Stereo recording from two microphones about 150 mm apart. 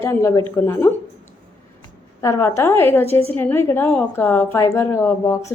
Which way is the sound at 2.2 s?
20° left (ahead or behind).